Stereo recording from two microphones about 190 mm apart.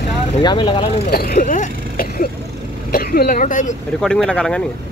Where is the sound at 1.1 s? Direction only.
50° left (ahead or behind).